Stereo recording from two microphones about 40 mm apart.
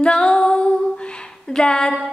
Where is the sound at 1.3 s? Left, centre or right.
Centre.